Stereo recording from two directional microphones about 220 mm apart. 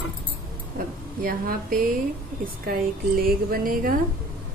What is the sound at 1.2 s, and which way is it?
Speech, 40° right (ahead or behind).